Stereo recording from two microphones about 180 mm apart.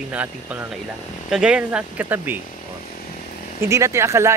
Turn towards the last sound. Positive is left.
turn(degrees=-15)  # may be behind; listen again after turning